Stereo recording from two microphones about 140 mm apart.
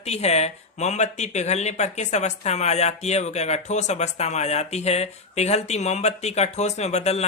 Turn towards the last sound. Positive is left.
turn(degrees=50)  # may be behind; listen again after turning